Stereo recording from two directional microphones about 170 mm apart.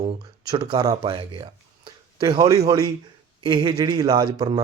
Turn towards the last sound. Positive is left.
turn(degrees=-25)  # may be behind; listen again after turning